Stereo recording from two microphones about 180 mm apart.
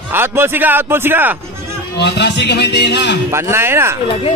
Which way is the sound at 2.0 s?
70° left (ahead or behind).